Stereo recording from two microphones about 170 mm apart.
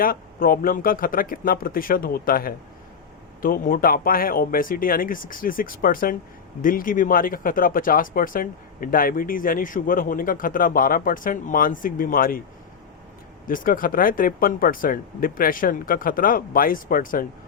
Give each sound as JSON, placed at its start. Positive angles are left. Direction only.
{"t": 0.0, "sound": "speech", "side_deg": 60}
{"t": 13.5, "sound": "speech", "side_deg": 55}